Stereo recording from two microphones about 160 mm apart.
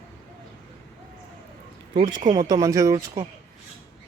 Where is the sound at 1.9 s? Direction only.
25° right (ahead or behind).